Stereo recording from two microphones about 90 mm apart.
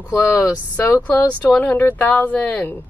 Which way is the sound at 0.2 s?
25° left (ahead or behind).